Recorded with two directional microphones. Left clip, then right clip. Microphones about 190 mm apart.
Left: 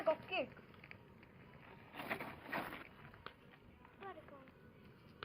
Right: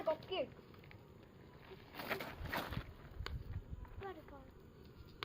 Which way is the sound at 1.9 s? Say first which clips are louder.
Right 1 dB; 30° left (ahead or behind).